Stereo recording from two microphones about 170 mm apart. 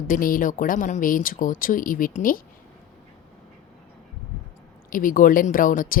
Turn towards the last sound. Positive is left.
turn(degrees=55)  # may be behind; listen again after turning